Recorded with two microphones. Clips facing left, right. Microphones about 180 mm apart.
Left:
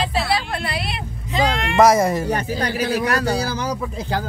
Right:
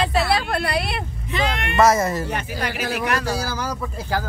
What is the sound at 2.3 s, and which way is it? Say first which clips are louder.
Speech: left 5 dB; 35° left (ahead or behind).